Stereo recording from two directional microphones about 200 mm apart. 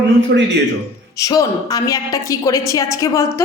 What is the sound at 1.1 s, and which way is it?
A woman's voice, 15° left (ahead or behind).